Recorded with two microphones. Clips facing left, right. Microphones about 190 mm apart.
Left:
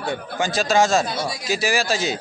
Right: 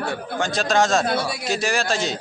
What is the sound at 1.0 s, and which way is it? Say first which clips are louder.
Speech: right 3 dB; 60° right (ahead or behind).